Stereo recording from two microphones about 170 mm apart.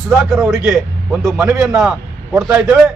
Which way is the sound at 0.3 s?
5° right (ahead or behind).